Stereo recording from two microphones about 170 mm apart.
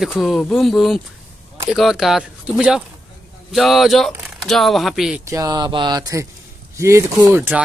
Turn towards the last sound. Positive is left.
turn(degrees=-15)  # may be behind; listen again after turning